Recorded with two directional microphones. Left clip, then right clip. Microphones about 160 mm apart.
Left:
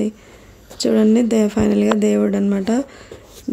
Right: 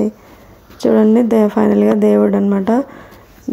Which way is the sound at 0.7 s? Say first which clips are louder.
Right 4 dB; centre (ahead or behind).